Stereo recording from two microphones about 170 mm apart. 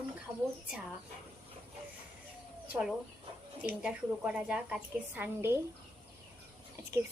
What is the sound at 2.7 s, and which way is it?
A woman's voice, centre (ahead or behind).